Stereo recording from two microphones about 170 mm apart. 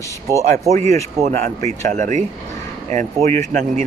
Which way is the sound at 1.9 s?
45° right (ahead or behind).